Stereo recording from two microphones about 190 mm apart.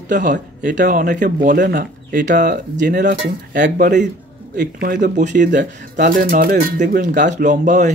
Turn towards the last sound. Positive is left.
turn(degrees=-40)  # may be behind; listen again after turning